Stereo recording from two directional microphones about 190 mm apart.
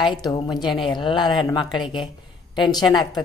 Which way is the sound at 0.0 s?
25° left (ahead or behind).